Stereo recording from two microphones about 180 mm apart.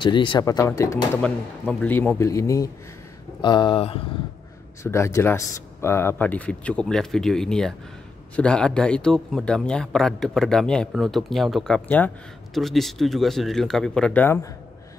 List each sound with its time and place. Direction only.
0.0 s speech: 25° left (ahead or behind)
4.8 s speech: 15° left (ahead or behind)